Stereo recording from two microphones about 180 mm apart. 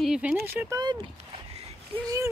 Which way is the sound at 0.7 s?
20° right (ahead or behind).